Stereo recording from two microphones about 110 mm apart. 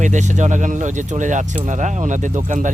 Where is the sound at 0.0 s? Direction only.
90° right.